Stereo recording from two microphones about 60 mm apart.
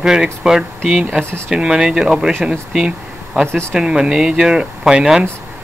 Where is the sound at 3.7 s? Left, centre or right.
Centre.